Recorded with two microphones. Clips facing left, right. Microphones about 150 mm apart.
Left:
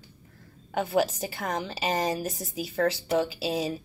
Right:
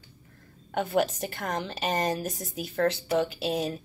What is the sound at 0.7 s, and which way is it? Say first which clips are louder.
A woman's voice: left 1 dB; centre (ahead or behind).